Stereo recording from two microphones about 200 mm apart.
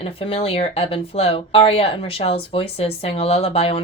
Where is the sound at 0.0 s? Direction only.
30° left (ahead or behind).